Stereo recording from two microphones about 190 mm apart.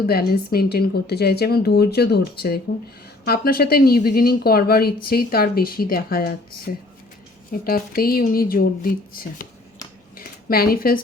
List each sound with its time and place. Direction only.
0.0 s a woman's voice: 55° left (ahead or behind)
3.2 s speech: 50° left (ahead or behind)
10.2 s a sound: 50° left (ahead or behind)